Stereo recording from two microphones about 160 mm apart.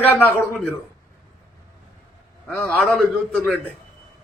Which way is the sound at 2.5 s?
15° left (ahead or behind).